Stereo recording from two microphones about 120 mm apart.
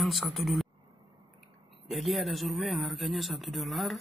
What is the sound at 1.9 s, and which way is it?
Speech, centre (ahead or behind).